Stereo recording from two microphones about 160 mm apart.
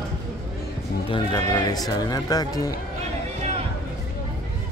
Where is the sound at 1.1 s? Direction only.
25° left (ahead or behind).